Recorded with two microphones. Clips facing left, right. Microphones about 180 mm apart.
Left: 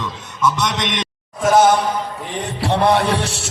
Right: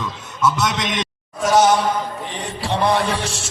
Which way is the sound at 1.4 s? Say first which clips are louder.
Left 2 dB; 50° left (ahead or behind).